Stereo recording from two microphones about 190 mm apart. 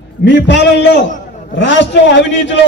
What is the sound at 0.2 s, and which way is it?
A man's voice, 65° left (ahead or behind).